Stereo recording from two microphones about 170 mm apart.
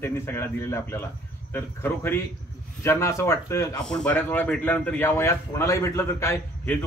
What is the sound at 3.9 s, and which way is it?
Speech, 5° left (ahead or behind).